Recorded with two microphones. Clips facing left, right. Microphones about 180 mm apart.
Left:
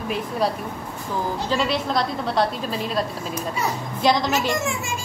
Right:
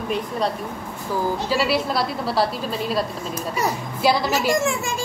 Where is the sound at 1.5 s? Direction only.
5° right (ahead or behind).